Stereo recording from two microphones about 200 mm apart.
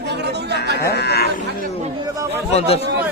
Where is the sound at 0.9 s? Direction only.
55° left (ahead or behind).